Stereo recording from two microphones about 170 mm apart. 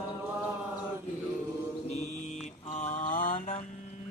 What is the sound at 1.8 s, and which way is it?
Mantra, 40° left (ahead or behind).